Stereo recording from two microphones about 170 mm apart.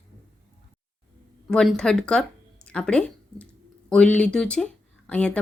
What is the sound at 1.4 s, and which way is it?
Speech, 5° left (ahead or behind).